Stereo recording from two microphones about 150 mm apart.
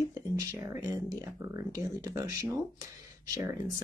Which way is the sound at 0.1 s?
20° right (ahead or behind).